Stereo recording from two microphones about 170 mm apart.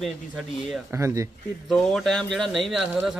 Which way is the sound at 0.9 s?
15° right (ahead or behind).